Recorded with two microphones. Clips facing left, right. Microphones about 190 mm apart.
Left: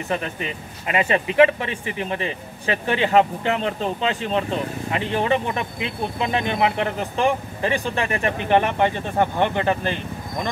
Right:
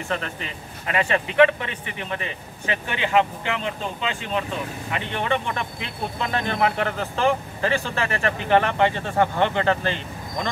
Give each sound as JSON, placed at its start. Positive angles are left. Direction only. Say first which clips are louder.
{"t": 0.8, "sound": "a man's voice", "louder": "left 2 dB", "side_deg": 25}
{"t": 6.3, "sound": "speech", "louder": "left 1 dB", "side_deg": 15}